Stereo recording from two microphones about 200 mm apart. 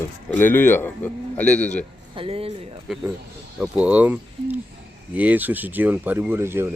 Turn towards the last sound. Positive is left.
turn(degrees=-10)  # may be behind; listen again after turning